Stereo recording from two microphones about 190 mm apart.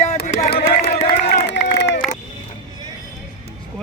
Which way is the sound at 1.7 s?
65° left (ahead or behind).